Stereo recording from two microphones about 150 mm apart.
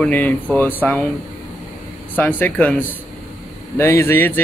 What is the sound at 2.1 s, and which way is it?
Speech, 10° left (ahead or behind).